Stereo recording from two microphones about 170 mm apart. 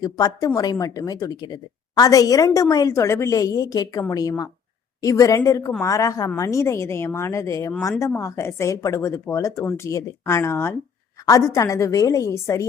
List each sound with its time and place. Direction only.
0.0 s a woman's voice: 20° left (ahead or behind)